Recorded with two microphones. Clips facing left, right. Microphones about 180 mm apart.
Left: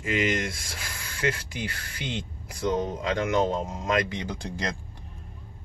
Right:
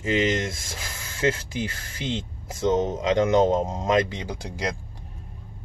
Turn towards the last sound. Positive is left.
turn(degrees=-10)  # may be behind; listen again after turning